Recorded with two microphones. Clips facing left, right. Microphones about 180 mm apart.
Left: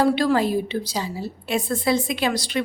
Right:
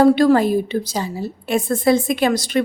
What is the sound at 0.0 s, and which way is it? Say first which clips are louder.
A woman's voice: right 6 dB; 45° right (ahead or behind).